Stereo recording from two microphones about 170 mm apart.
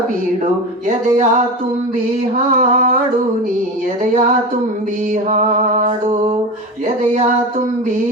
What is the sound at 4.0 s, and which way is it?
Mantra, 50° right (ahead or behind).